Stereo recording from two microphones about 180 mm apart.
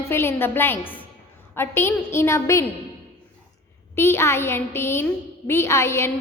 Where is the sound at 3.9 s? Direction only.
15° left (ahead or behind).